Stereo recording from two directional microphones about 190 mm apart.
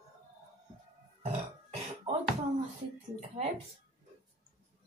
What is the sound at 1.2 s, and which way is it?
Burping, 35° right (ahead or behind).